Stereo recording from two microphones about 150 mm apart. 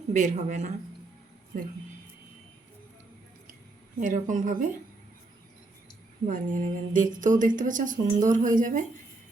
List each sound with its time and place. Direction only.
0.1 s speech: 55° right (ahead or behind)
4.0 s speech: 60° right (ahead or behind)
6.2 s speech: 60° right (ahead or behind)